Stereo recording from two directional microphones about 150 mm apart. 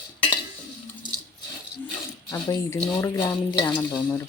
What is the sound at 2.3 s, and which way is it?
Speech, 25° left (ahead or behind).